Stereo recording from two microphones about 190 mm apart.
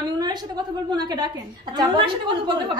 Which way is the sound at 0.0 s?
20° right (ahead or behind).